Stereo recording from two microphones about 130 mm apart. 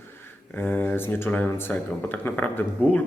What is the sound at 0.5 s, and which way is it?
Speech, 15° left (ahead or behind).